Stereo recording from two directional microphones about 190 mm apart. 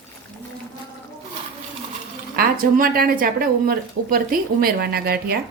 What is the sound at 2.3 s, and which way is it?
Speech, 50° right (ahead or behind).